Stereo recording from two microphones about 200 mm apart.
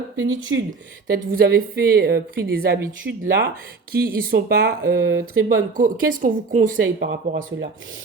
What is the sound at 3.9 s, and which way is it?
A woman's voice, 50° right (ahead or behind).